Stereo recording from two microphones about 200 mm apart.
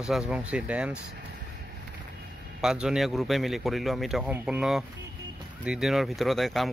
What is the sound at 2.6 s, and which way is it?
A man's voice, 5° right (ahead or behind).